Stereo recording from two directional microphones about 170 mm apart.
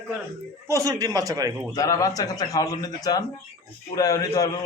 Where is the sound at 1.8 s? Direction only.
20° left (ahead or behind).